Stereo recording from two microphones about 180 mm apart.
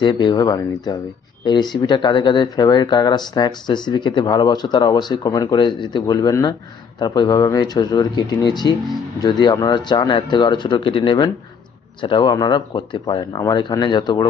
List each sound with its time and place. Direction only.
0.0 s speech: 25° left (ahead or behind)